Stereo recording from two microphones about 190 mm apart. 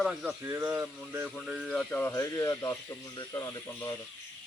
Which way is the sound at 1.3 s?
Centre (ahead or behind).